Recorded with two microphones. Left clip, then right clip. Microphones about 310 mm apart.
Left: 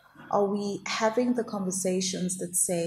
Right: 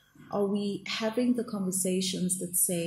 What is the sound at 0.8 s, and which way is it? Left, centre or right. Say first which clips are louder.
Speech: left 5 dB; left.